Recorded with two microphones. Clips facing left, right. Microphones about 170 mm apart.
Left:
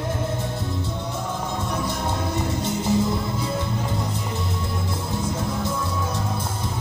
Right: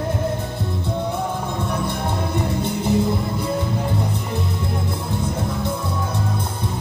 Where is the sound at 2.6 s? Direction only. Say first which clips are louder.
Right 2 dB; 60° right (ahead or behind).